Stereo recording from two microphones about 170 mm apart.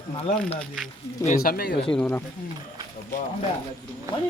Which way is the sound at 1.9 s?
10° left (ahead or behind).